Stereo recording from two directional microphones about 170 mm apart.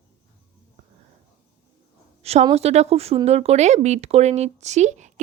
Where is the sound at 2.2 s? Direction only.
40° right (ahead or behind).